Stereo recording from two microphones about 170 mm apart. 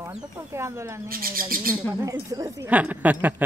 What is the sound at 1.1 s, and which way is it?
Bird, 55° right (ahead or behind).